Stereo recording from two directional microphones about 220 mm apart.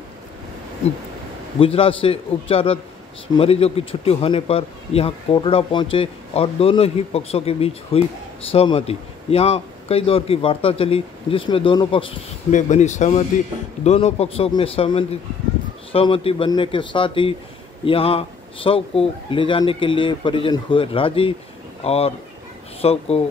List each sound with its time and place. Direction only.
1.6 s a man's voice: 25° left (ahead or behind)